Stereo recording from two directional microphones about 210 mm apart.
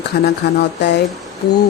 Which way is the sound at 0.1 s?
45° left (ahead or behind).